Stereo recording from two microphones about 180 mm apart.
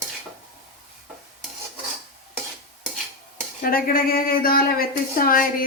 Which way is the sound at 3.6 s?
50° left (ahead or behind).